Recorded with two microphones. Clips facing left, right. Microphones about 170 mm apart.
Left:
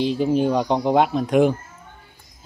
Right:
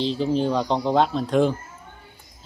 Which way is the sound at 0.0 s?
10° left (ahead or behind).